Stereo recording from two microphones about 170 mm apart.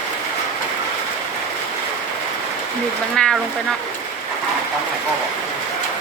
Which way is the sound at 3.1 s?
5° left (ahead or behind).